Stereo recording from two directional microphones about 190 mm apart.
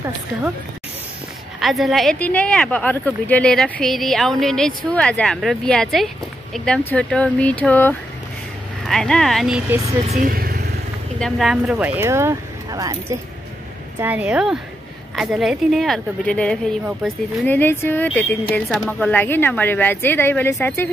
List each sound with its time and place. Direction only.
1.6 s a woman's voice: centre (ahead or behind)
9.7 s speech: 15° right (ahead or behind)
10.0 s speech: 45° right (ahead or behind)
11.1 s a woman's voice: centre (ahead or behind)
17.5 s speech: 10° left (ahead or behind)